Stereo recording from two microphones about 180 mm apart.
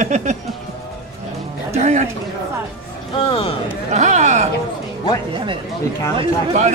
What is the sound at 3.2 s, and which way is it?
Speech, 30° left (ahead or behind).